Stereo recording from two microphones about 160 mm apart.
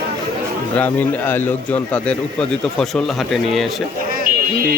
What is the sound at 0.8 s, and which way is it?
Speech, 10° left (ahead or behind).